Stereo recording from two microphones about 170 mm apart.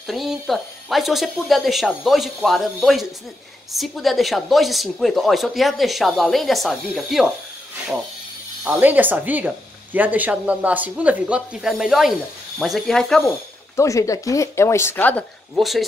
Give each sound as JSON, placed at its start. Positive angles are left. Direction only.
{"t": 0.0, "sound": "speech", "side_deg": 0}
{"t": 8.6, "sound": "speech", "side_deg": -10}
{"t": 13.7, "sound": "speech", "side_deg": 20}
{"t": 15.5, "sound": "speech", "side_deg": 0}